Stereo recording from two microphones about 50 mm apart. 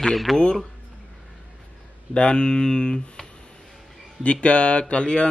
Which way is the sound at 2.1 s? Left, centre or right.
Centre.